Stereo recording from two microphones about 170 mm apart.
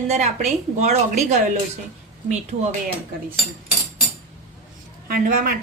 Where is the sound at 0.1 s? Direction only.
40° right (ahead or behind).